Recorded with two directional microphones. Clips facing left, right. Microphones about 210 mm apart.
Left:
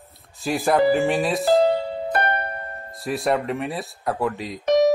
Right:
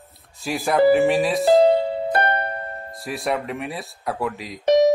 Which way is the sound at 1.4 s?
25° right (ahead or behind).